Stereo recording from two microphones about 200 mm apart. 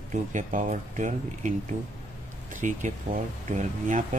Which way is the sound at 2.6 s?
40° right (ahead or behind).